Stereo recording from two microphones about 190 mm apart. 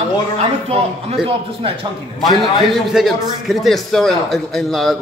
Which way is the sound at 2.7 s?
Centre (ahead or behind).